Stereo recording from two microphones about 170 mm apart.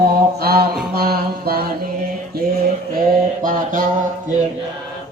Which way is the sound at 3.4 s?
50° right (ahead or behind).